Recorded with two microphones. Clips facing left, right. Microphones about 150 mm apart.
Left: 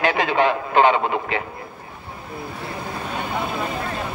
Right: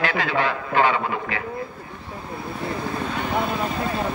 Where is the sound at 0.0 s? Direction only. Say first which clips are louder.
Left 4 dB; 20° left (ahead or behind).